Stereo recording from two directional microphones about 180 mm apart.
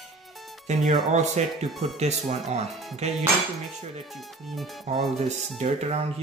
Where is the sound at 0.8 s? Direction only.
40° right (ahead or behind).